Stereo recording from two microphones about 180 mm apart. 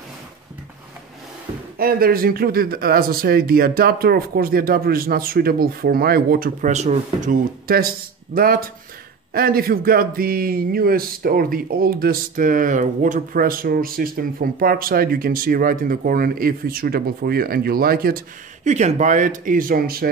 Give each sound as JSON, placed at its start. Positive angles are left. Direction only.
{"t": 1.8, "sound": "speech", "side_deg": -55}
{"t": 6.7, "sound": "speech", "side_deg": -40}
{"t": 18.6, "sound": "speech", "side_deg": -40}